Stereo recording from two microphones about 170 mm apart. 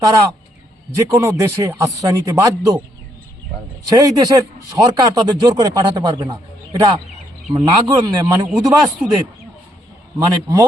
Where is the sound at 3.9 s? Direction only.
20° right (ahead or behind).